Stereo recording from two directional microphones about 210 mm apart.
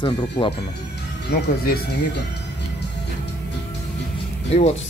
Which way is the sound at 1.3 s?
45° left (ahead or behind).